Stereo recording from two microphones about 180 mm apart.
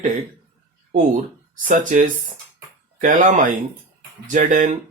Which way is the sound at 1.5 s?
45° right (ahead or behind).